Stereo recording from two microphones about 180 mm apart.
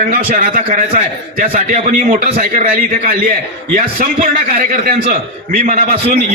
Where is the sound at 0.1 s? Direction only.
50° right (ahead or behind).